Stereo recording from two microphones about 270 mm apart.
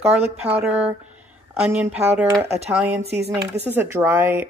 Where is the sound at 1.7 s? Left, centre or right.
Centre.